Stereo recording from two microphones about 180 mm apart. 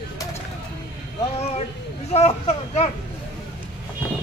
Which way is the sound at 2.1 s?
40° left (ahead or behind).